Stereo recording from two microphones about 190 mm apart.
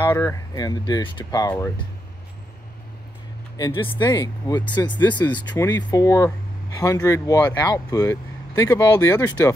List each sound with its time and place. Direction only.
0.0 s speech: 15° left (ahead or behind)
3.5 s speech: 25° left (ahead or behind)